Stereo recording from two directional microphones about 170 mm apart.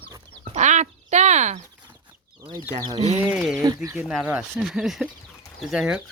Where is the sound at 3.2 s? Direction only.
5° right (ahead or behind).